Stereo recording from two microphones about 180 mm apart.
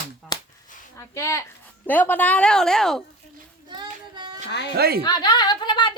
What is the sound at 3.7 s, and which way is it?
Child singing, 25° right (ahead or behind).